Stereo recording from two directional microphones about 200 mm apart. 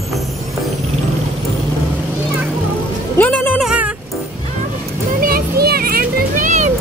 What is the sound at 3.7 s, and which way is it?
Music, 5° right (ahead or behind).